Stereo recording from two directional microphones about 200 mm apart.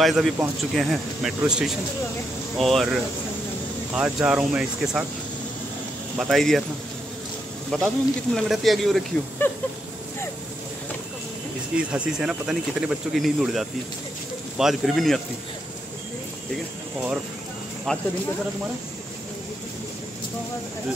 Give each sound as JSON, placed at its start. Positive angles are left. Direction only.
{"t": 0.0, "sound": "speech", "side_deg": 0}
{"t": 6.1, "sound": "speech", "side_deg": 0}
{"t": 7.7, "sound": "speech", "side_deg": 5}
{"t": 11.7, "sound": "speech", "side_deg": -5}
{"t": 17.9, "sound": "speech", "side_deg": 5}